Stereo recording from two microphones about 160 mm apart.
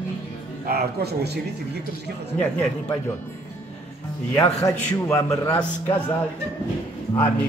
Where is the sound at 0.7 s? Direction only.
80° right.